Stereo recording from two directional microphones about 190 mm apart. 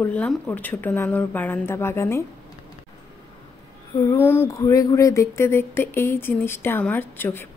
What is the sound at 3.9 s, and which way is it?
A woman's voice, 15° left (ahead or behind).